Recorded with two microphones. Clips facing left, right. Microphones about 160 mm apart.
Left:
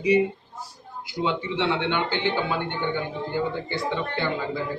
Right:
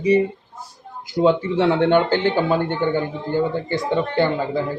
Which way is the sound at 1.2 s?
45° right (ahead or behind).